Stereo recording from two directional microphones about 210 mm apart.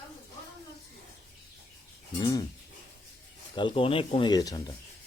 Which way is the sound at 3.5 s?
20° left (ahead or behind).